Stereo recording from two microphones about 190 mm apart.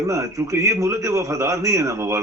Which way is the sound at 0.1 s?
15° right (ahead or behind).